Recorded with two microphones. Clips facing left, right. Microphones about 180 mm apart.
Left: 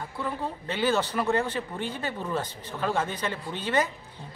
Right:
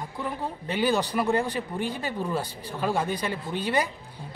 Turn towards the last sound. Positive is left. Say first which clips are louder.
# even
turn(degrees=-10)  # may be behind; listen again after turning